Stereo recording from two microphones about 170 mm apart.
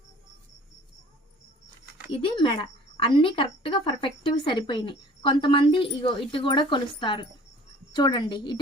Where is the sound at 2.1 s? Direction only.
30° left (ahead or behind).